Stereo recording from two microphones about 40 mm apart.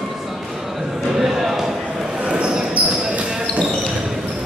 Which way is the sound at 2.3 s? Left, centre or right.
Right.